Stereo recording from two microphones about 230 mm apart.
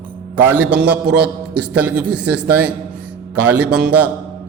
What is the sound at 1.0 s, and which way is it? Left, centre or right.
Speech, right.